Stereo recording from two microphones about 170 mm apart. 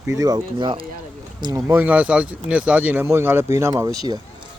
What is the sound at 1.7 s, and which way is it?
Speech, 10° right (ahead or behind).